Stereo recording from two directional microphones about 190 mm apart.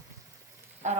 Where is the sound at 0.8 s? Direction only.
40° right (ahead or behind).